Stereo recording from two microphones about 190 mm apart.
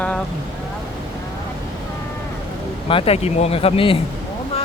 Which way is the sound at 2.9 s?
30° left (ahead or behind).